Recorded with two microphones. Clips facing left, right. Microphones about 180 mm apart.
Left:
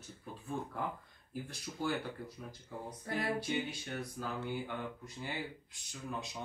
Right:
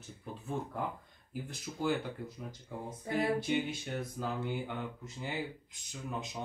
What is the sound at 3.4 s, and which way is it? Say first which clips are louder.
Speech: right 4 dB; 25° right (ahead or behind).